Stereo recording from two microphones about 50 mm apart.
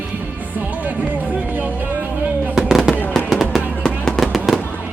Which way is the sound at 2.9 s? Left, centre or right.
Left.